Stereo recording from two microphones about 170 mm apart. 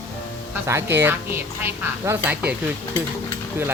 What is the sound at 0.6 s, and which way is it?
Speech, 15° right (ahead or behind).